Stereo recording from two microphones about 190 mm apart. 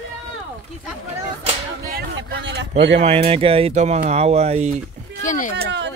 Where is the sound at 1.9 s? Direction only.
65° right (ahead or behind).